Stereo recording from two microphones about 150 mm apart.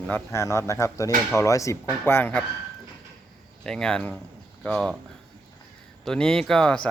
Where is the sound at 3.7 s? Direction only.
5° left (ahead or behind).